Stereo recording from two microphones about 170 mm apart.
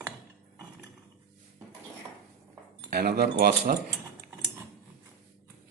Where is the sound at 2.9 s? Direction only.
65° right (ahead or behind).